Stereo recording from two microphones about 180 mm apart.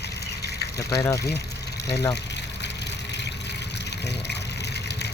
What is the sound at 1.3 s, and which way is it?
Vehicle, 65° left (ahead or behind).